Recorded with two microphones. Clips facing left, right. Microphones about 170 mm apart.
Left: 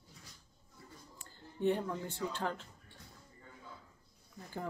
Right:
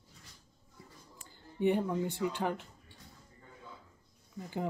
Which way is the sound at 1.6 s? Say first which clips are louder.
Right 4 dB; 15° right (ahead or behind).